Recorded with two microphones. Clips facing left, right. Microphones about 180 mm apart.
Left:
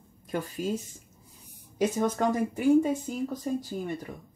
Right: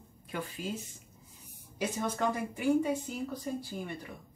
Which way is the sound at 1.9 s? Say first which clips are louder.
Left 3 dB; 45° left (ahead or behind).